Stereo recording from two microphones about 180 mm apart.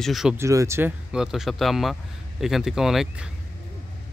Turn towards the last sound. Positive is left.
turn(degrees=-5)  # may be behind; listen again after turning